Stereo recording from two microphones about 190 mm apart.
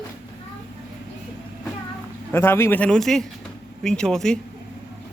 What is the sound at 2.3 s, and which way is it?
A man's voice, 10° left (ahead or behind).